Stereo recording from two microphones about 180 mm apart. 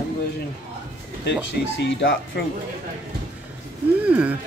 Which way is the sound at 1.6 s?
85° left.